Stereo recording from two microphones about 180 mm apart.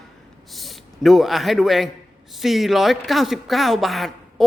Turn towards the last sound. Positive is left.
turn(degrees=0)  # may be behind; listen again after turning